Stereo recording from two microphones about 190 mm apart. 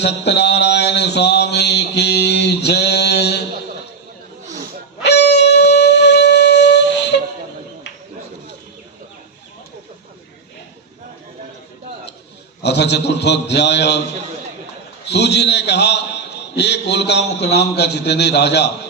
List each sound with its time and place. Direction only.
0.0 s mantra: 65° left (ahead or behind)
5.0 s shofar: 60° left (ahead or behind)
12.6 s mantra: 65° left (ahead or behind)
15.0 s a man's voice: 60° left (ahead or behind)
17.7 s mantra: 60° left (ahead or behind)